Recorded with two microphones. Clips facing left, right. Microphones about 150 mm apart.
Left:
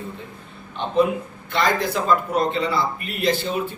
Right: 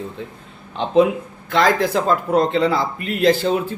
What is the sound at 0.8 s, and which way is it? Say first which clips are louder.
Speech: right 4 dB; 90° right.